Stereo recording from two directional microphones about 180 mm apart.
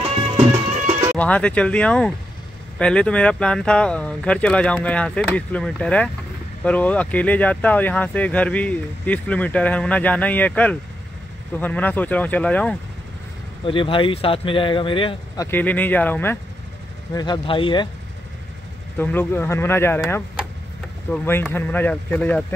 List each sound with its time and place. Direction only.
1.1 s speech: 5° left (ahead or behind)
13.7 s speech: 30° left (ahead or behind)
15.4 s speech: 10° left (ahead or behind)
17.1 s speech: 25° left (ahead or behind)
18.9 s speech: 10° left (ahead or behind)